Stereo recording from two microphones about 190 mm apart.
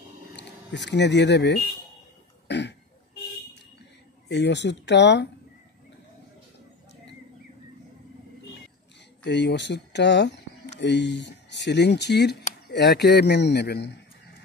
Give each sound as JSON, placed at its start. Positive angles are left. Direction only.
{"t": 0.4, "sound": "speech", "side_deg": 65}
{"t": 2.4, "sound": "throat clearing", "side_deg": 65}
{"t": 4.3, "sound": "a man's voice", "side_deg": 65}
{"t": 9.2, "sound": "a man's voice", "side_deg": 65}